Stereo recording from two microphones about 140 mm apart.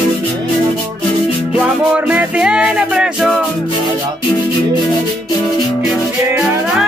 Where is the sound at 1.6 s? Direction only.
10° right (ahead or behind).